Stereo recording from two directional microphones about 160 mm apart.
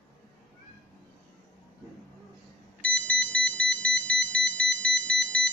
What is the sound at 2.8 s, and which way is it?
Ringtone, 5° left (ahead or behind).